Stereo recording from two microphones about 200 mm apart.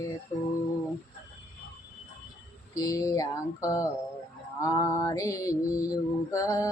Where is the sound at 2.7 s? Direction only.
15° left (ahead or behind).